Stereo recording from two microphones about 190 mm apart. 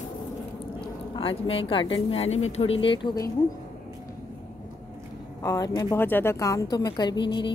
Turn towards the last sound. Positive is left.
turn(degrees=25)  # may be behind; listen again after turning